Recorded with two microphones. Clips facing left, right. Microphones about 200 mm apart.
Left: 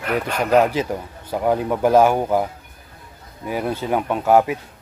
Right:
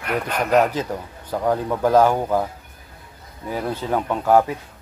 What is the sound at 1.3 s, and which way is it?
Speech, 15° left (ahead or behind).